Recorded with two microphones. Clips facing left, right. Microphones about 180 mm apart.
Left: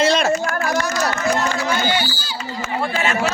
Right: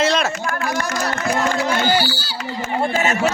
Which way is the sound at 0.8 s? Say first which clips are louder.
Left 2 dB; 55° right (ahead or behind).